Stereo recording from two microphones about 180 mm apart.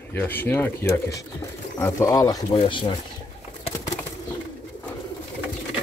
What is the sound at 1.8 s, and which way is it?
Speech, 15° left (ahead or behind).